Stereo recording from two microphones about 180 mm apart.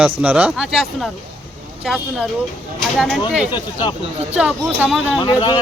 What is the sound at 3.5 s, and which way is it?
Speech, 25° left (ahead or behind).